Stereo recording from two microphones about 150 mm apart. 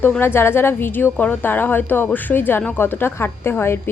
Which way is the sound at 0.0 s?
15° left (ahead or behind).